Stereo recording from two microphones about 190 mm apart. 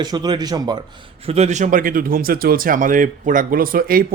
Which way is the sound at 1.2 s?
35° right (ahead or behind).